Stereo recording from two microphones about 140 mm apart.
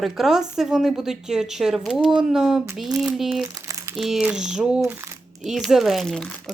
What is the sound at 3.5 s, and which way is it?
Crumpling, 25° right (ahead or behind).